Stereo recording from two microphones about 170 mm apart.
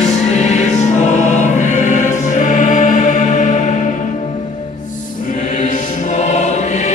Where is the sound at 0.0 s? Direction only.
45° left (ahead or behind).